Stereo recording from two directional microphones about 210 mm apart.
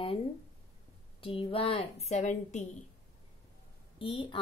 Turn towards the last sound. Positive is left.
turn(degrees=25)  # may be behind; listen again after turning